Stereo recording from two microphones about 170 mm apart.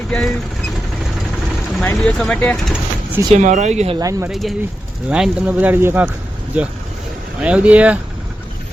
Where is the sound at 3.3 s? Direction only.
45° right (ahead or behind).